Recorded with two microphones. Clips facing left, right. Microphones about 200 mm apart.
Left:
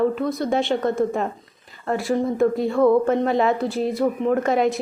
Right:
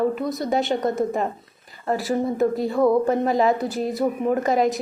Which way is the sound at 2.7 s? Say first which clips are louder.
Left 2 dB; 20° right (ahead or behind).